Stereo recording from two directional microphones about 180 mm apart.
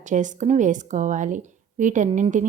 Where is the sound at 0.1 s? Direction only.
40° right (ahead or behind).